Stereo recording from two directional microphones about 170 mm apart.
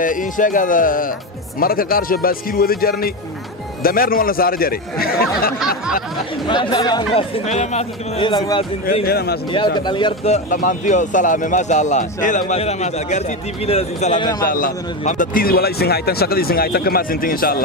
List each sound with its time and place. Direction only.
0.0 s speech: 50° left (ahead or behind)
6.4 s speech: 30° left (ahead or behind)
8.2 s a man's voice: 25° left (ahead or behind)
9.0 s speech: 65° left (ahead or behind)
9.8 s a man's voice: 25° left (ahead or behind)
10.3 s speech: 50° left (ahead or behind); by 14.3 s 30° left (ahead or behind)
14.4 s speech: 55° left (ahead or behind)